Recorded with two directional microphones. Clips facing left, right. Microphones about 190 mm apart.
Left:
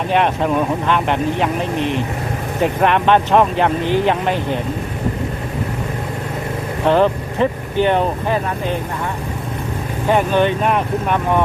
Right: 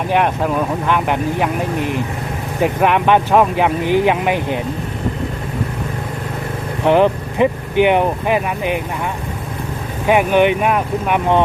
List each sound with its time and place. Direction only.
0.1 s speech: 5° right (ahead or behind)
2.6 s speech: 10° right (ahead or behind)
6.8 s speech: 15° right (ahead or behind)
10.1 s speech: 15° right (ahead or behind)